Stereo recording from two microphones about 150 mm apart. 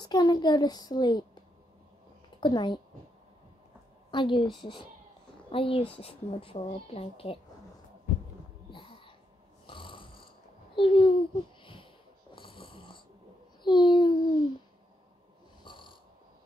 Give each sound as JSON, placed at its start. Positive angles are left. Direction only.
{"t": 0.0, "sound": "a child's voice", "side_deg": 25}
{"t": 2.4, "sound": "speech", "side_deg": 30}
{"t": 4.1, "sound": "a woman's voice", "side_deg": 35}
{"t": 8.6, "sound": "a sound", "side_deg": 35}
{"t": 9.7, "sound": "snoring", "side_deg": 35}
{"t": 10.8, "sound": "speech", "side_deg": 35}
{"t": 11.6, "sound": "a sound", "side_deg": 35}
{"t": 12.4, "sound": "snoring", "side_deg": 35}
{"t": 13.6, "sound": "a child's voice", "side_deg": 30}
{"t": 15.6, "sound": "snoring", "side_deg": 30}